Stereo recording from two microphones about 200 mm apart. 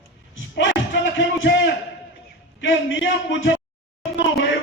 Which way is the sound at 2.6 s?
70° left (ahead or behind).